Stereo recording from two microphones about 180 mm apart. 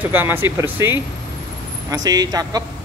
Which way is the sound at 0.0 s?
10° right (ahead or behind).